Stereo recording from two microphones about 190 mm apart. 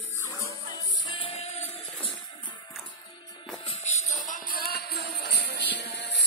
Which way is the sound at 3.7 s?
35° left (ahead or behind).